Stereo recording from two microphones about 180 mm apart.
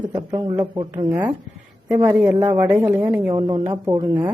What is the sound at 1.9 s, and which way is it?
Speech, 10° right (ahead or behind).